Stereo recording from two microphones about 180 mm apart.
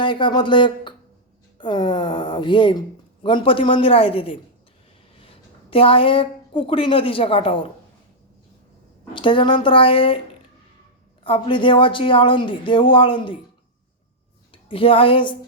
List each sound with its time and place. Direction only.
0.0 s speech: 25° left (ahead or behind)
9.1 s speech: 30° left (ahead or behind)
11.2 s speech: 30° left (ahead or behind)
14.5 s speech: 30° left (ahead or behind)